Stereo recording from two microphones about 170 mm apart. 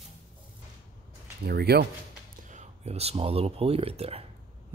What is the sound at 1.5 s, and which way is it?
Speech, 70° right (ahead or behind).